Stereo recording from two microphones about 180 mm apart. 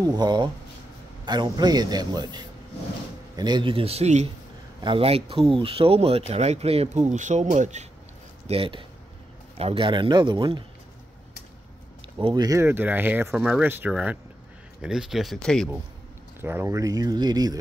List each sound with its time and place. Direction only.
0.0 s a man's voice: 25° right (ahead or behind); by 7.9 s 40° right (ahead or behind)
8.5 s a man's voice: 30° right (ahead or behind)
12.2 s speech: 25° right (ahead or behind); by 15.7 s centre (ahead or behind)
16.3 s a man's voice: 10° right (ahead or behind)